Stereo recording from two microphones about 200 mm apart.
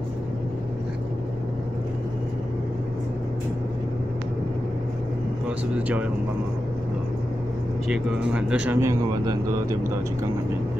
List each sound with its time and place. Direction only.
7.9 s speech: 5° right (ahead or behind)
9.2 s speech: 20° right (ahead or behind)